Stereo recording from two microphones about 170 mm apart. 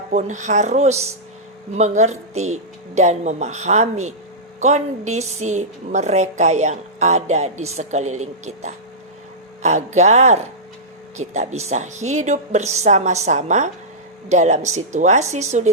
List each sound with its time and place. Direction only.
0.1 s a woman's voice: 45° right (ahead or behind)